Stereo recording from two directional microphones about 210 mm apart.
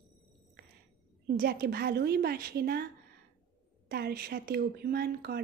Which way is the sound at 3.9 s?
50° right (ahead or behind).